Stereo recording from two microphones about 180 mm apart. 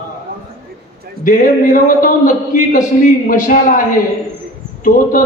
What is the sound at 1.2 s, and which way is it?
A man's voice, 45° left (ahead or behind).